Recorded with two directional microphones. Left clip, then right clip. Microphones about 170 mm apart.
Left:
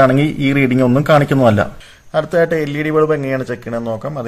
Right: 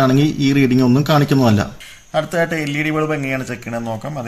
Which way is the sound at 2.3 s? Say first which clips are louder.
Left 4 dB; 45° left (ahead or behind).